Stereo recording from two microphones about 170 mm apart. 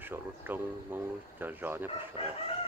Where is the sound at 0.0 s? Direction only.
10° right (ahead or behind).